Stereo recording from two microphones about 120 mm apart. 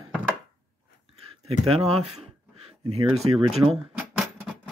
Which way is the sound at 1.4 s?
55° right (ahead or behind).